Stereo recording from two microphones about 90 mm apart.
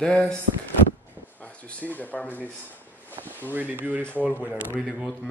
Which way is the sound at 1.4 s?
15° left (ahead or behind).